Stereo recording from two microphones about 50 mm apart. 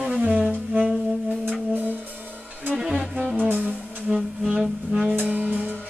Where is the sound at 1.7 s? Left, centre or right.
Right.